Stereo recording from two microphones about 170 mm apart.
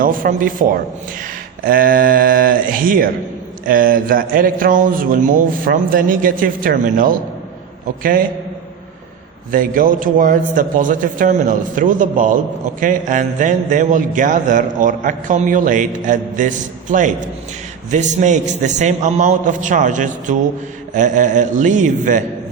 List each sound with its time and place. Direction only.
0.0 s a man's voice: 55° right (ahead or behind)
9.5 s a man's voice: 50° right (ahead or behind)